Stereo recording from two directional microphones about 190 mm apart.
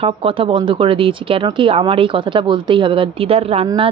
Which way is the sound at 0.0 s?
30° right (ahead or behind).